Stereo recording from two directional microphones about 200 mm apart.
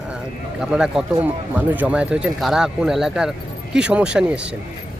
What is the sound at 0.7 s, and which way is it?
Speech, 5° right (ahead or behind).